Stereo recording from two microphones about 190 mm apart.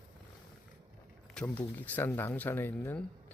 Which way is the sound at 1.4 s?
10° left (ahead or behind).